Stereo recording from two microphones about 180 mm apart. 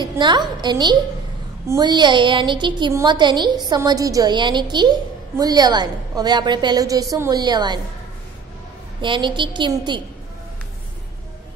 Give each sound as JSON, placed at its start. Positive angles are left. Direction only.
{"t": 0.2, "sound": "a woman's voice", "side_deg": -25}
{"t": 9.0, "sound": "a woman's voice", "side_deg": -25}